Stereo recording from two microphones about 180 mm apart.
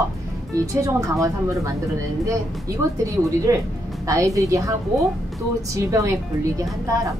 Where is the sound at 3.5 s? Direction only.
20° right (ahead or behind).